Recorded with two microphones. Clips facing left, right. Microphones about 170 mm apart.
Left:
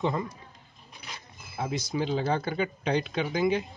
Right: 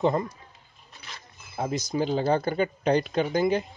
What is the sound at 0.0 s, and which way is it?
Speech, 45° right (ahead or behind).